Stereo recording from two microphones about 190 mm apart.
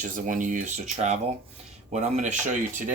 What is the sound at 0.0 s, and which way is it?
Speech, 45° right (ahead or behind).